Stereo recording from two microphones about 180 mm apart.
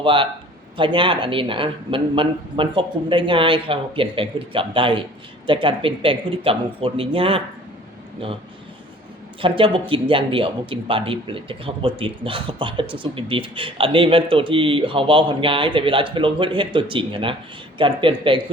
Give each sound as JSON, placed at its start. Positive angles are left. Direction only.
{"t": 0.0, "sound": "speech", "side_deg": -30}
{"t": 9.4, "sound": "speech", "side_deg": -30}